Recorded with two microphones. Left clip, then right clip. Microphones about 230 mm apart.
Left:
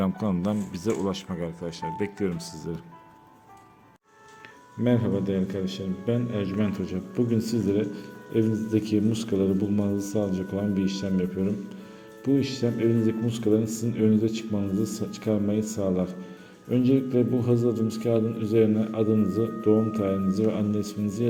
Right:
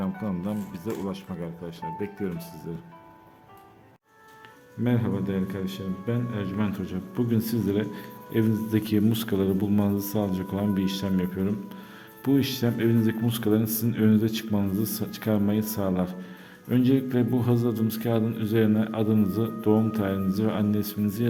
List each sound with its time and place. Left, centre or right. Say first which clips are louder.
0.0 s speech: left 4 dB; left
4.8 s a man's voice: left 3 dB; centre; by 21.2 s right